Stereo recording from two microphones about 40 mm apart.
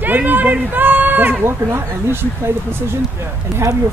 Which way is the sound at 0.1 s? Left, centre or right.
Right.